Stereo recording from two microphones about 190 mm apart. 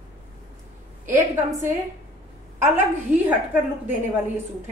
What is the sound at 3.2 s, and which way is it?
Speech, 10° right (ahead or behind).